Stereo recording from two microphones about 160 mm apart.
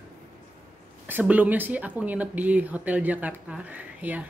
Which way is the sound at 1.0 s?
10° right (ahead or behind).